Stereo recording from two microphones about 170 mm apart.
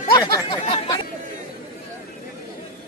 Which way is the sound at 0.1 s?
20° left (ahead or behind).